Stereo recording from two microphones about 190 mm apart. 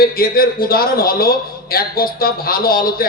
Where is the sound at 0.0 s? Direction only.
50° left (ahead or behind).